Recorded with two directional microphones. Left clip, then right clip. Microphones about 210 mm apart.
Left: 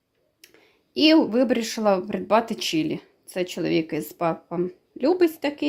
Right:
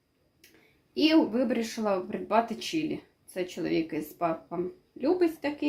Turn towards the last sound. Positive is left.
turn(degrees=50)  # may be behind; listen again after turning